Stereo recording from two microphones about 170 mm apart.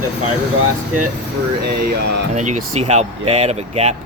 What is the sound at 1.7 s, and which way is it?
Speech, 65° right (ahead or behind).